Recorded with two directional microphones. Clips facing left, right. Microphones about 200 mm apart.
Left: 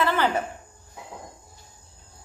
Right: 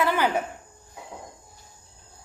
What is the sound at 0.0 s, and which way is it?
Cricket, 10° right (ahead or behind).